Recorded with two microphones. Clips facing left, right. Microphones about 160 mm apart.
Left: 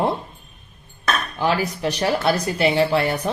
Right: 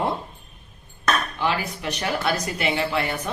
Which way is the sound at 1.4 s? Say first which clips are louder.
Left 4 dB; 35° left (ahead or behind).